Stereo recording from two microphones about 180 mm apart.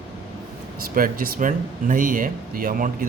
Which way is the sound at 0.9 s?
50° right (ahead or behind).